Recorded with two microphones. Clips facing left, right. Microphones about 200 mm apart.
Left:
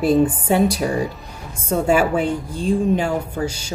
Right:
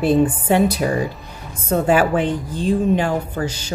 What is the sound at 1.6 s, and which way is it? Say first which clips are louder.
A woman's voice: right 1 dB; 10° left (ahead or behind).